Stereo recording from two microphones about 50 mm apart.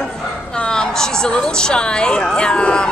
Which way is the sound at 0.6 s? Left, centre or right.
Centre.